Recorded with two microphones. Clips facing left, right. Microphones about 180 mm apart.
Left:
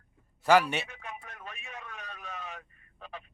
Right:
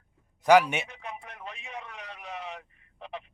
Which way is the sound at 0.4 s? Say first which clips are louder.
Right 3 dB; 15° right (ahead or behind).